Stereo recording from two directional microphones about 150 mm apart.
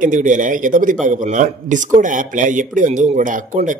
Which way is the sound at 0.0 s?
60° right (ahead or behind).